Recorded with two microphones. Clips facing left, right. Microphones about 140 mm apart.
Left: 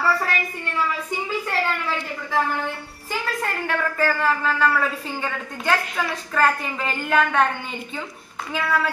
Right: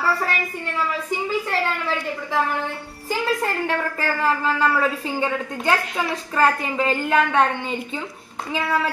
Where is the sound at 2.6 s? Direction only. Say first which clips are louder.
Right 2 dB; 30° right (ahead or behind).